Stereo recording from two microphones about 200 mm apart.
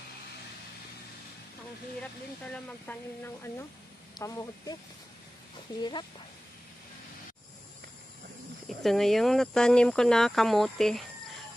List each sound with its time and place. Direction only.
2.9 s speech: 10° left (ahead or behind)
4.2 s speech: 15° left (ahead or behind)
5.8 s speech: 20° left (ahead or behind)
8.6 s speech: centre (ahead or behind)